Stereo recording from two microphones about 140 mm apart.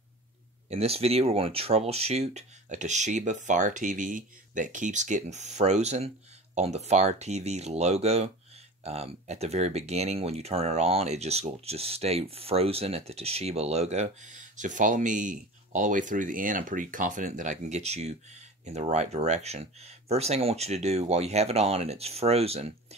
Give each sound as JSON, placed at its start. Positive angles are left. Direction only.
{"t": 0.7, "sound": "speech", "side_deg": -45}